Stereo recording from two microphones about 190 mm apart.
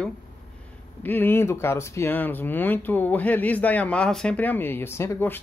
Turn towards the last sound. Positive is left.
turn(degrees=15)  # may be behind; listen again after turning